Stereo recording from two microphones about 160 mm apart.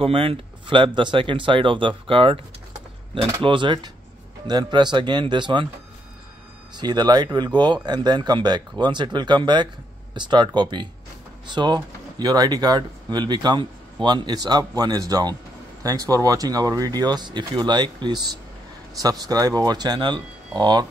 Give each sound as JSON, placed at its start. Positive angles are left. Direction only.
{"t": 0.0, "sound": "speech", "side_deg": -35}
{"t": 6.8, "sound": "speech", "side_deg": -25}